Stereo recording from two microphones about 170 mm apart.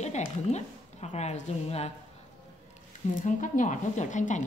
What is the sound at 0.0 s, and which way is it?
A woman's voice, 40° left (ahead or behind).